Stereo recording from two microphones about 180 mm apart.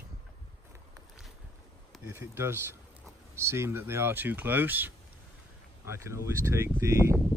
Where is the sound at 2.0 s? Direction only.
15° right (ahead or behind).